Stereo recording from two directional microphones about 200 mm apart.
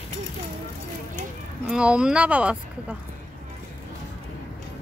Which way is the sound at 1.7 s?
5° right (ahead or behind).